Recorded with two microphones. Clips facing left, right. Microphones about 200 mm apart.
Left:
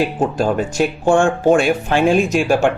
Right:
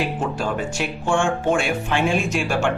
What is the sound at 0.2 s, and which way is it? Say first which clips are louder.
Speech: left 7 dB; 40° left (ahead or behind).